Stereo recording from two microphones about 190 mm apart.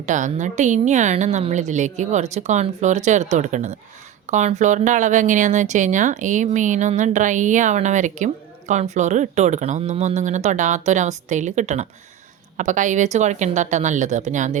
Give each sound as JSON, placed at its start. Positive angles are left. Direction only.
{"t": 0.0, "sound": "speech", "side_deg": -40}